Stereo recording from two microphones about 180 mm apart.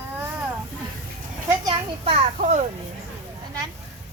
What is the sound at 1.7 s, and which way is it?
Speech, 35° right (ahead or behind).